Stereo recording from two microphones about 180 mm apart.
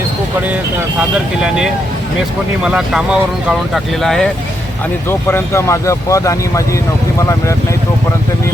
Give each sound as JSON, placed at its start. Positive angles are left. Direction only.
{"t": 2.6, "sound": "speech", "side_deg": -5}
{"t": 5.0, "sound": "speech", "side_deg": 15}